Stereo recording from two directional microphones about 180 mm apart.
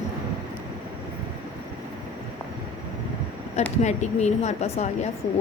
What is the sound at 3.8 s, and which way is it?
A woman's voice, 40° left (ahead or behind).